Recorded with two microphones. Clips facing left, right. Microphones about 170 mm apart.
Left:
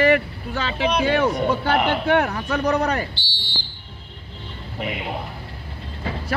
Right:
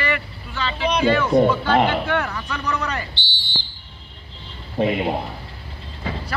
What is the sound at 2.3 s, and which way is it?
Speech, 35° left (ahead or behind).